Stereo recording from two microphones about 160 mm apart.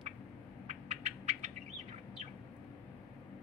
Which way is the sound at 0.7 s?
40° right (ahead or behind).